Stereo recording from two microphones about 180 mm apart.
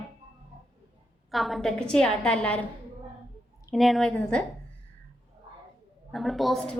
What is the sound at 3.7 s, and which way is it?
Speech, centre (ahead or behind).